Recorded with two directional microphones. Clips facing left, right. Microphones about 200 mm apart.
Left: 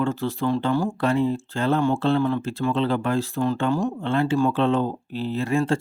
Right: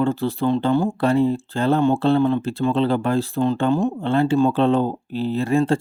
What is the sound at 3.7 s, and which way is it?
Speech, 20° right (ahead or behind).